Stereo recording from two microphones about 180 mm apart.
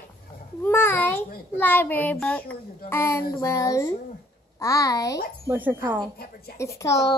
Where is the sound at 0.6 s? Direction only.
10° left (ahead or behind).